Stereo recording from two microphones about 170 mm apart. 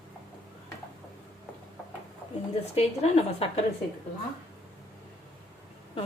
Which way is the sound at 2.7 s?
35° left (ahead or behind).